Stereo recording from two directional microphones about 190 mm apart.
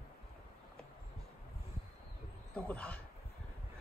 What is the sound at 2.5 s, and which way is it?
Speech, 5° left (ahead or behind).